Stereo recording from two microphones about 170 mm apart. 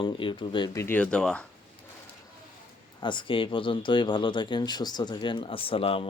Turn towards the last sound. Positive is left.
turn(degrees=30)  # may be behind; listen again after turning